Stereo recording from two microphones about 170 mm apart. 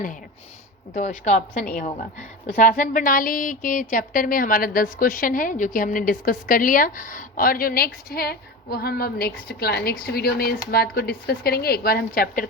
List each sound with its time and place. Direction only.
0.9 s a woman's voice: 50° left (ahead or behind)